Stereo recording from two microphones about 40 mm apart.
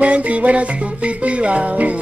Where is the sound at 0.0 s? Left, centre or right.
Right.